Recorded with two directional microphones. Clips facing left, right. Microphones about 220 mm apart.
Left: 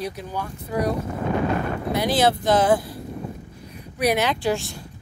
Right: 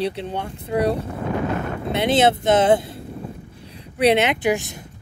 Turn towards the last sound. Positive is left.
turn(degrees=-20)  # may be behind; listen again after turning